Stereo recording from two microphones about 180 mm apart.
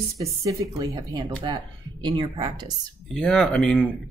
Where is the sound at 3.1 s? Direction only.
5° left (ahead or behind).